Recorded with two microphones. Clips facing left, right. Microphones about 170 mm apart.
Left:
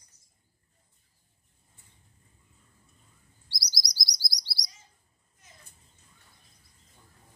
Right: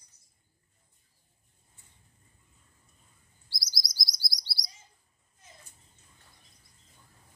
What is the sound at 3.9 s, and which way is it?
Chirp, centre (ahead or behind).